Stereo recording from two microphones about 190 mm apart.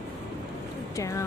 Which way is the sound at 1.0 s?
15° left (ahead or behind).